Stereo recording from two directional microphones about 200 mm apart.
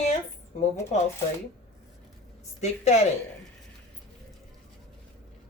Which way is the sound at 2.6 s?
35° left (ahead or behind).